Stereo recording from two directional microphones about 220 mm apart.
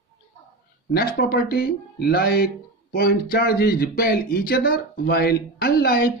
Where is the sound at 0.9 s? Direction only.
45° left (ahead or behind).